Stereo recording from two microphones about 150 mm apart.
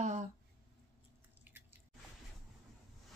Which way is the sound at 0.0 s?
50° right (ahead or behind).